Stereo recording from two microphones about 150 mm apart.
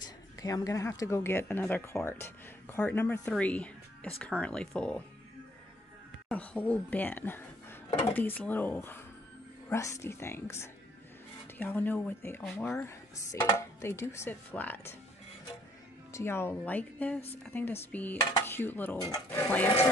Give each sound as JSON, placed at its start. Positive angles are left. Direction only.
{"t": 0.0, "sound": "a woman's voice", "side_deg": 25}
{"t": 6.2, "sound": "speech", "side_deg": 10}
{"t": 16.1, "sound": "speech", "side_deg": 15}